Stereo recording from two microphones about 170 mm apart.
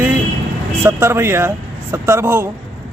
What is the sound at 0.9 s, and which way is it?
Speech, 15° right (ahead or behind).